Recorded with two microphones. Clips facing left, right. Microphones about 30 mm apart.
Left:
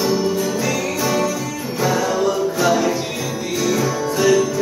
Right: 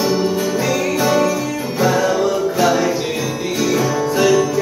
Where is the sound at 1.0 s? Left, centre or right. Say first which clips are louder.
Right 4 dB; centre.